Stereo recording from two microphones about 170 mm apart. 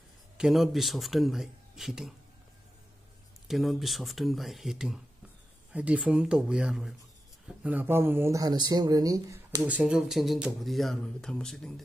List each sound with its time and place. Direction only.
0.4 s speech: centre (ahead or behind)
3.4 s speech: centre (ahead or behind); by 9.6 s 20° right (ahead or behind)
9.6 s speech: 5° right (ahead or behind)